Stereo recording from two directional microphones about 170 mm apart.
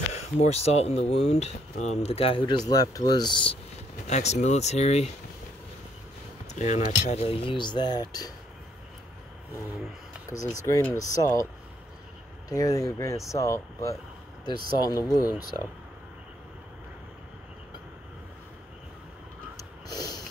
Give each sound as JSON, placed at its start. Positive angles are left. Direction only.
{"t": 0.1, "sound": "speech", "side_deg": 40}
{"t": 2.7, "sound": "speech", "side_deg": 20}
{"t": 4.1, "sound": "speech", "side_deg": 40}
{"t": 6.5, "sound": "speech", "side_deg": 45}
{"t": 10.3, "sound": "speech", "side_deg": 20}
{"t": 12.4, "sound": "speech", "side_deg": 20}
{"t": 19.9, "sound": "sniff", "side_deg": 25}